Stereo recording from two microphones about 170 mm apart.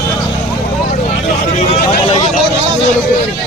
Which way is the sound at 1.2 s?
45° left (ahead or behind).